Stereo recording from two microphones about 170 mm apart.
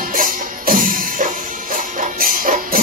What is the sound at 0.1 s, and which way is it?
Music, 55° right (ahead or behind).